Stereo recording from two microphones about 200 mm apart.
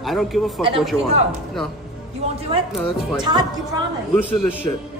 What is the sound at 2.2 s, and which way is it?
Speech, 30° right (ahead or behind).